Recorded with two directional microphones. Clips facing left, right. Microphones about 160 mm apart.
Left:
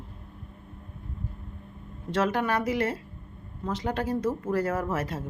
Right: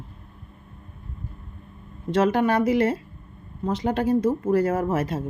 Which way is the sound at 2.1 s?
20° right (ahead or behind).